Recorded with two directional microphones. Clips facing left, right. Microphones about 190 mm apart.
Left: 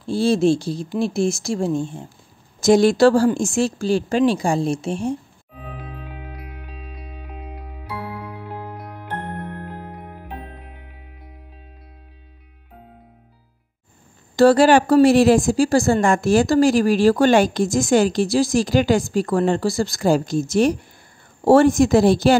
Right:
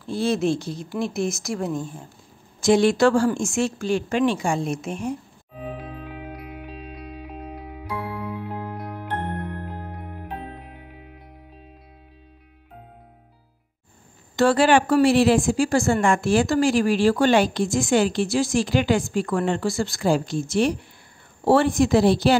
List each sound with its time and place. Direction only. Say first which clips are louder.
0.0 s a woman's voice: left 5 dB; 30° left (ahead or behind)
2.6 s a woman's voice: left 4 dB; 40° left (ahead or behind)
5.6 s music: right 3 dB; centre (ahead or behind)
14.3 s a woman's voice: left 5 dB; 40° left (ahead or behind)